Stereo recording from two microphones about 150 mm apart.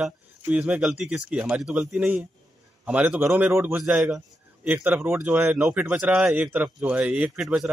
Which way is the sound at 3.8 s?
5° right (ahead or behind).